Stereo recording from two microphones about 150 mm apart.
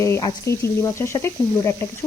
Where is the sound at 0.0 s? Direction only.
20° left (ahead or behind).